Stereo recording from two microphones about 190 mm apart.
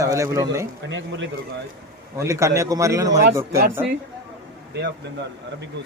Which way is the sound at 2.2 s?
15° right (ahead or behind).